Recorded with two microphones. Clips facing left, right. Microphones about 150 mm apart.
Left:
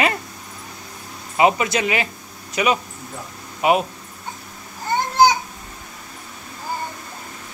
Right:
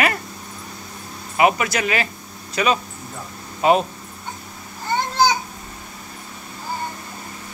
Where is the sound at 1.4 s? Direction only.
20° left (ahead or behind).